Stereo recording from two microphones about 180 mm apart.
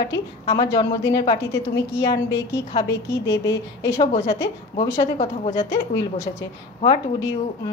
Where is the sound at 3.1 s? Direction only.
15° left (ahead or behind).